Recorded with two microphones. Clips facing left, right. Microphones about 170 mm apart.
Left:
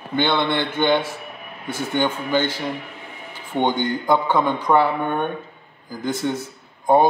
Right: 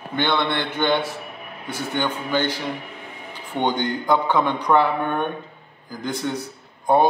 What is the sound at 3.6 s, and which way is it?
A man's voice, centre (ahead or behind).